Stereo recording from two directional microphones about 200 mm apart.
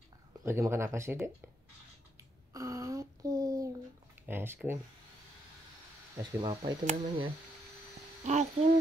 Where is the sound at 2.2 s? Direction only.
15° right (ahead or behind).